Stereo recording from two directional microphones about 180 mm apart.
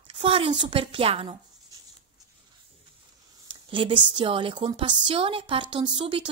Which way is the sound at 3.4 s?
30° right (ahead or behind).